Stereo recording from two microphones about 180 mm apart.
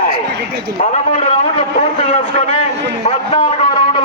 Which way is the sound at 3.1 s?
30° left (ahead or behind).